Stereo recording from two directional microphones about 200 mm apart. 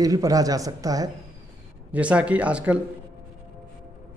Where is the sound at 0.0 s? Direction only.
15° right (ahead or behind).